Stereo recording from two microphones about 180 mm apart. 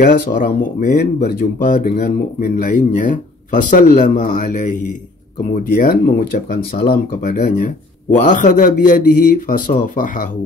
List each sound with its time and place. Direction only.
0.0 s speech: 55° left (ahead or behind)